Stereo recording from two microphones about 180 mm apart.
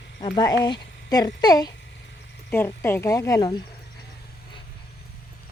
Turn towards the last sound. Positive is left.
turn(degrees=20)  # may be behind; listen again after turning